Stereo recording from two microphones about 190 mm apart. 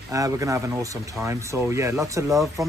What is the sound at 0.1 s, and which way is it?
Speech, 15° right (ahead or behind).